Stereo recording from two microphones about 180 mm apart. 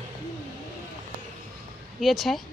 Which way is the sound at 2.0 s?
Centre (ahead or behind).